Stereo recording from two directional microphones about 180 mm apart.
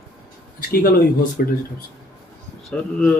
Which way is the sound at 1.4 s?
55° left (ahead or behind).